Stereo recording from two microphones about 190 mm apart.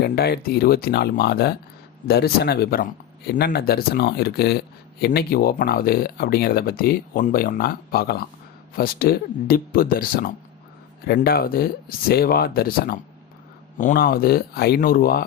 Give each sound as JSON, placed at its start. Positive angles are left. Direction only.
{"t": 0.0, "sound": "speech", "side_deg": 55}